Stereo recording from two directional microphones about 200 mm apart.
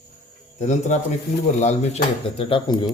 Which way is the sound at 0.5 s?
35° left (ahead or behind).